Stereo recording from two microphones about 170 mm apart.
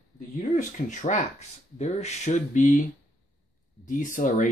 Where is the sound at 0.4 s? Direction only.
45° left (ahead or behind).